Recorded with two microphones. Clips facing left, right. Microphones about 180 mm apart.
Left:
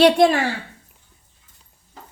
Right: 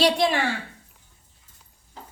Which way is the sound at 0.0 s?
50° left (ahead or behind).